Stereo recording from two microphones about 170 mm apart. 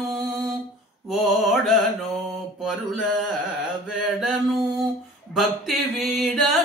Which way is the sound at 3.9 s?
5° right (ahead or behind).